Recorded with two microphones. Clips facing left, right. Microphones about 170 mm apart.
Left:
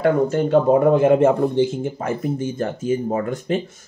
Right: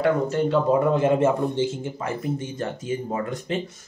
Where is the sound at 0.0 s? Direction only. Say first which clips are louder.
Left 4 dB; 45° left (ahead or behind).